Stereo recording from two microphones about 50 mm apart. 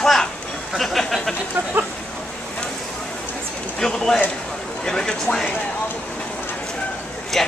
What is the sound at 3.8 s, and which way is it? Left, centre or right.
A woman's voice, centre.